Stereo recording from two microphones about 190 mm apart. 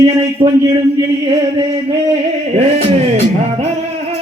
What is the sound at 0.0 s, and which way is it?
Speech, 20° right (ahead or behind).